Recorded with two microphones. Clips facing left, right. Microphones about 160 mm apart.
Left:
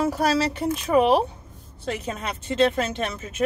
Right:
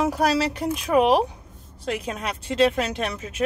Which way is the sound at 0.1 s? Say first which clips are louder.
Even; centre (ahead or behind).